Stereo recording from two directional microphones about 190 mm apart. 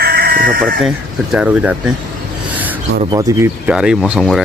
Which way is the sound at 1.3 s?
10° right (ahead or behind).